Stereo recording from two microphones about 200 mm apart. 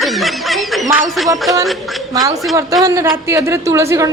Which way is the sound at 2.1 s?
15° right (ahead or behind).